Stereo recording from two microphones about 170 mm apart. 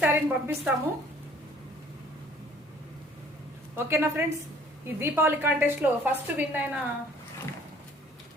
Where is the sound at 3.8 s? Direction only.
15° right (ahead or behind).